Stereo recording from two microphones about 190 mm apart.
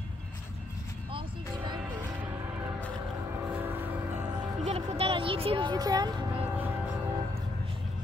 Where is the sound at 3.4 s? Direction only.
10° right (ahead or behind).